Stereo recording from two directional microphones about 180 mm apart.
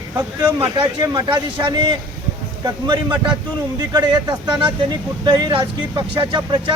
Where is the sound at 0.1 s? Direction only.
15° right (ahead or behind).